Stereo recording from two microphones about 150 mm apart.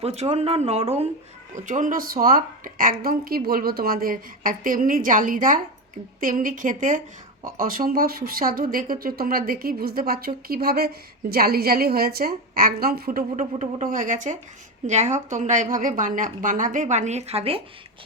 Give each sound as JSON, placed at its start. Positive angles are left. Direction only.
{"t": 0.0, "sound": "speech", "side_deg": -45}
{"t": 1.5, "sound": "a woman's voice", "side_deg": -55}